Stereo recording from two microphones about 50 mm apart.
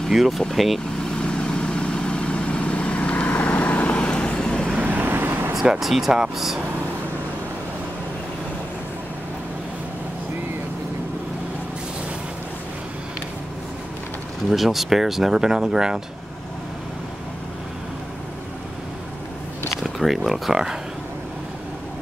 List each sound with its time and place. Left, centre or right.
0.1 s speech: centre
1.1 s vehicle: centre; by 4.0 s left
4.0 s vehicle: left
4.7 s vehicle: right
5.6 s speech: centre
14.5 s speech: centre
19.8 s speech: centre